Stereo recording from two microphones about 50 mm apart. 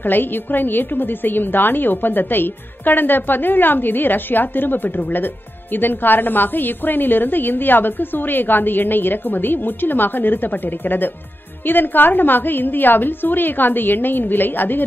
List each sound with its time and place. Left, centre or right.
0.0 s a woman's voice: left